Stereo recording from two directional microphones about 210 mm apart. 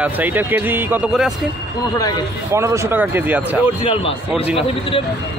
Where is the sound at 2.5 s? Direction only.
15° right (ahead or behind).